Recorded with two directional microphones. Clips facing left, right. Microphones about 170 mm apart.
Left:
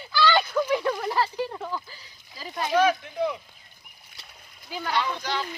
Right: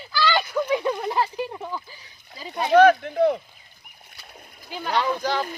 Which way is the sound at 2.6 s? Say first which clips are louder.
Right 7 dB; 60° right (ahead or behind).